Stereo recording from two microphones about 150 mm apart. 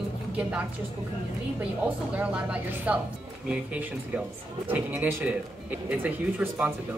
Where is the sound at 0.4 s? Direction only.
5° right (ahead or behind).